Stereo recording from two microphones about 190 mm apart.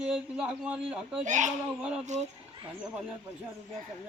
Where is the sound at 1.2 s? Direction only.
40° right (ahead or behind).